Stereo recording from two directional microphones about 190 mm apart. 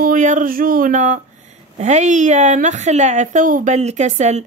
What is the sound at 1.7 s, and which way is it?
A woman's voice, 40° right (ahead or behind).